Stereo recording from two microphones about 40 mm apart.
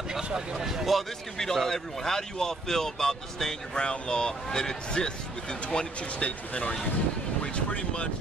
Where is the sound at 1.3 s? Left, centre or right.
Centre.